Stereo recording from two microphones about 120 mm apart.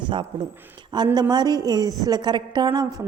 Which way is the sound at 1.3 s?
35° right (ahead or behind).